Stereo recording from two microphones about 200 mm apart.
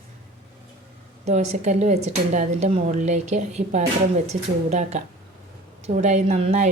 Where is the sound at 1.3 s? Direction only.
35° right (ahead or behind).